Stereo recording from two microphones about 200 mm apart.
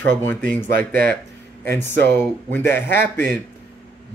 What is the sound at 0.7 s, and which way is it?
Speech, 50° right (ahead or behind).